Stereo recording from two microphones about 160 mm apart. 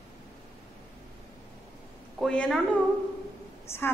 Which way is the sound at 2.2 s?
5° left (ahead or behind).